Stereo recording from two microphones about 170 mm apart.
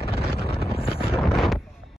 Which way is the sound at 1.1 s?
Centre (ahead or behind).